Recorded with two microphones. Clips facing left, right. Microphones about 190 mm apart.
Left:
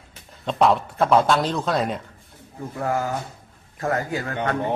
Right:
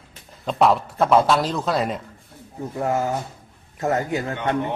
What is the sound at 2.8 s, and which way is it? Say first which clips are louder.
A man's voice: right 2 dB; 20° right (ahead or behind).